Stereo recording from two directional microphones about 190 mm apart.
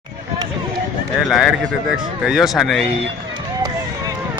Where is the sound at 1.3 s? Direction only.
Centre (ahead or behind).